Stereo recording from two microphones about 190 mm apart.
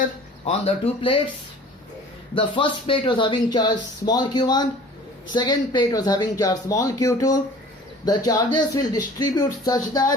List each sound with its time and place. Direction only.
0.4 s speech: 30° left (ahead or behind)
2.3 s speech: 25° left (ahead or behind)